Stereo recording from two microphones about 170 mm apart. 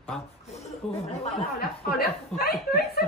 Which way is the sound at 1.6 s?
65° left (ahead or behind).